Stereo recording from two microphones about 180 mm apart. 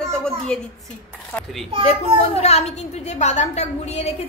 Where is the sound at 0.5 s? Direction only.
5° left (ahead or behind).